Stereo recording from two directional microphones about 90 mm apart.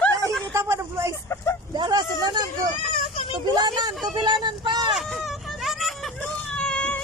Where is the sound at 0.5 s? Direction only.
30° right (ahead or behind).